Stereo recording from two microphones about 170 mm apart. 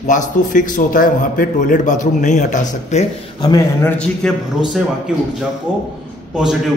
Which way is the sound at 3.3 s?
20° left (ahead or behind).